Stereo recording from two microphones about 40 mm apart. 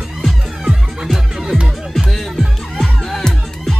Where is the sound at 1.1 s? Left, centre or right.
Centre.